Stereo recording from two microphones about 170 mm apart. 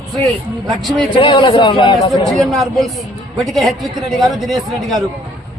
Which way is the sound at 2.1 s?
Centre (ahead or behind).